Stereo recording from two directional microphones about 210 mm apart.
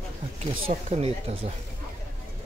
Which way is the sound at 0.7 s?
30° right (ahead or behind).